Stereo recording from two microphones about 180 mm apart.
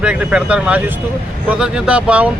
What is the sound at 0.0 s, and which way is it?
Speech, 5° right (ahead or behind).